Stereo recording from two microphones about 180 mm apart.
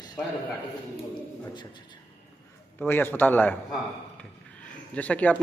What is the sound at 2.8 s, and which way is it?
Speech, 10° left (ahead or behind).